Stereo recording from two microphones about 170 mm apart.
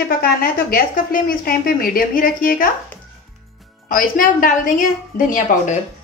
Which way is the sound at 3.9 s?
55° left (ahead or behind).